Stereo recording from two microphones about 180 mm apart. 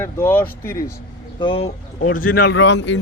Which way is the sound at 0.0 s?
15° left (ahead or behind).